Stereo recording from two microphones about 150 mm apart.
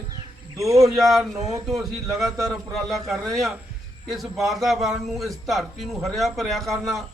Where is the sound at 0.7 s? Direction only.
20° right (ahead or behind).